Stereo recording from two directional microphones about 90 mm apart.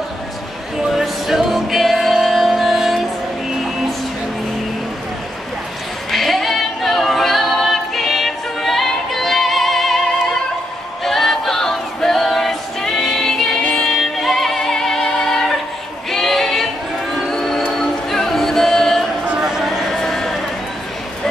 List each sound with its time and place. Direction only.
0.9 s music: centre (ahead or behind)
6.1 s a capella: centre (ahead or behind)
11.1 s music: centre (ahead or behind)
16.1 s singing: 5° left (ahead or behind)
17.1 s music: centre (ahead or behind)
19.2 s a sound: 10° right (ahead or behind); by 20.3 s 5° left (ahead or behind)